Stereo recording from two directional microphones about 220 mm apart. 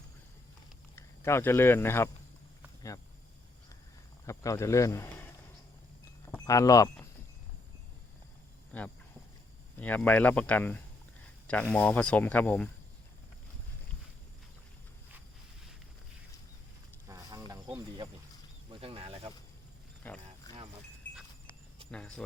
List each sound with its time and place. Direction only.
0.9 s speech: 10° left (ahead or behind)
4.3 s speech: 15° left (ahead or behind)
6.3 s speech: 15° left (ahead or behind)
8.7 s speech: 5° left (ahead or behind)
17.1 s a sound: 15° right (ahead or behind)
17.7 s snake: 20° right (ahead or behind)
20.0 s clip-clop: 10° left (ahead or behind)
21.9 s speech: 5° left (ahead or behind)